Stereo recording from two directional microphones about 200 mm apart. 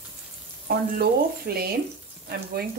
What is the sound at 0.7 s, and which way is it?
Speech, 50° right (ahead or behind).